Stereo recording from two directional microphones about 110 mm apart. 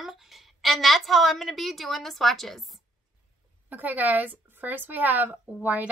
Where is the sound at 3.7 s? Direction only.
15° right (ahead or behind).